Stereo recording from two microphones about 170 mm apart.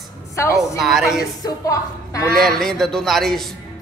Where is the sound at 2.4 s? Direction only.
Centre (ahead or behind).